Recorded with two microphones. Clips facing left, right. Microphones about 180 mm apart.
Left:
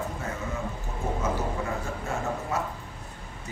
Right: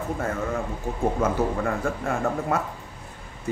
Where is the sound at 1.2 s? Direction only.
55° right (ahead or behind).